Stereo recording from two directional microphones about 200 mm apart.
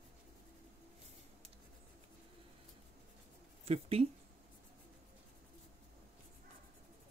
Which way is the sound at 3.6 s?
30° right (ahead or behind).